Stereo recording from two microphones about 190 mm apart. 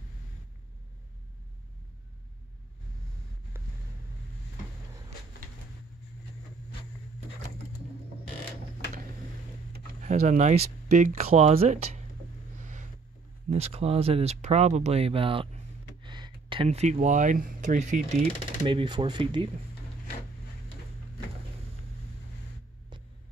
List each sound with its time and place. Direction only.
9.7 s speech: 40° right (ahead or behind)
12.5 s a sound: 40° right (ahead or behind)
13.5 s speech: 35° right (ahead or behind)
18.6 s speech: 25° right (ahead or behind)